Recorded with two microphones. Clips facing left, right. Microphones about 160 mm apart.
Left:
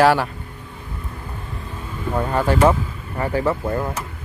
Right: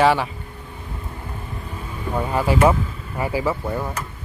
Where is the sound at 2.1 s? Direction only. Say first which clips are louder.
Left 1 dB; 5° right (ahead or behind).